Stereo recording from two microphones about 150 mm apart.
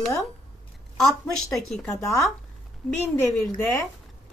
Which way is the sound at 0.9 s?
Centre (ahead or behind).